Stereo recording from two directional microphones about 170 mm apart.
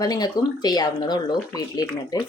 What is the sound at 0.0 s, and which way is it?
Speech, 25° left (ahead or behind).